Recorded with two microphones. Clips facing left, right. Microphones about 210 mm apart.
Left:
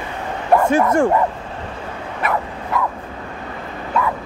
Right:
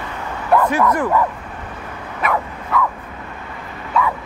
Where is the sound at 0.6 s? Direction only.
25° left (ahead or behind).